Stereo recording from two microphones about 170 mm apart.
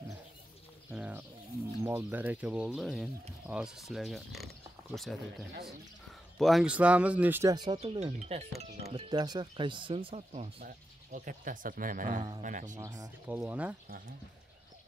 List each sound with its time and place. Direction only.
0.9 s bird: 10° right (ahead or behind)
1.8 s speech: 10° right (ahead or behind)
5.5 s speech: 70° right (ahead or behind)
6.3 s speech: centre (ahead or behind)
7.5 s speech: 25° right (ahead or behind)
7.8 s speech: 40° right (ahead or behind)
8.9 s speech: 25° right (ahead or behind)
10.6 s speech: 55° right (ahead or behind)
12.7 s speech: 20° right (ahead or behind)
13.4 s speech: 10° right (ahead or behind)